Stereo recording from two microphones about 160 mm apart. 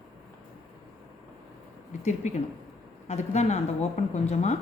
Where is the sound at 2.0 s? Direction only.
45° left (ahead or behind).